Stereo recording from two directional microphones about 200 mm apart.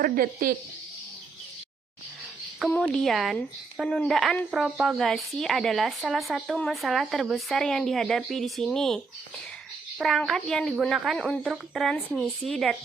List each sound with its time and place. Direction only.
0.0 s speech: 45° right (ahead or behind)
2.6 s speech: 5° left (ahead or behind)
10.0 s speech: centre (ahead or behind)